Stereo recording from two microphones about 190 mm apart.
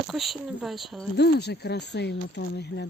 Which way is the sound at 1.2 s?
60° left (ahead or behind).